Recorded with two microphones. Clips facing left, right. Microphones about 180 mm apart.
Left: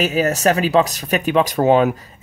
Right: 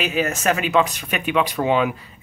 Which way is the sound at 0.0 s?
40° left (ahead or behind).